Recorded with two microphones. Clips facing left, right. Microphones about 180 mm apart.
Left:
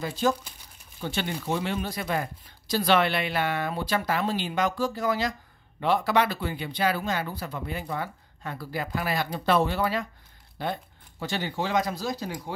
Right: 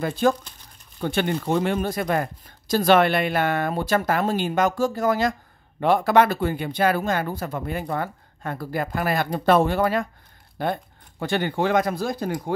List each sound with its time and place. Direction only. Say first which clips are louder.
0.0 s speech: right 5 dB; 55° right (ahead or behind)